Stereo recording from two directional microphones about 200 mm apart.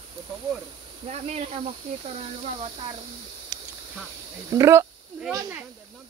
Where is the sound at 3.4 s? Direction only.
10° right (ahead or behind).